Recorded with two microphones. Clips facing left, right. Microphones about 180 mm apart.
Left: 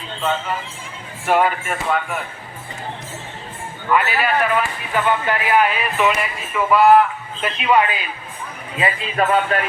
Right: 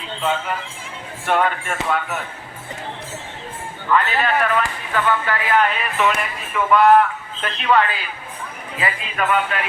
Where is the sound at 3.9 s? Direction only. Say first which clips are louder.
Even; 10° left (ahead or behind).